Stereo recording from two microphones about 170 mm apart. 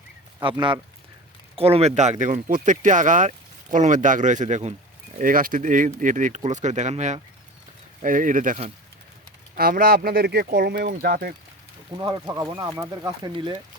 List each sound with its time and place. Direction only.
0.3 s speech: 25° right (ahead or behind); by 11.3 s 60° right (ahead or behind)
11.9 s speech: 20° right (ahead or behind)